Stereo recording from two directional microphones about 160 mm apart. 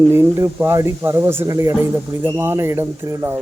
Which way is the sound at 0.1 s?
15° right (ahead or behind).